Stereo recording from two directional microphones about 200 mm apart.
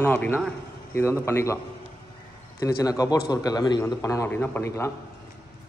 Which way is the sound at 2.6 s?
15° left (ahead or behind).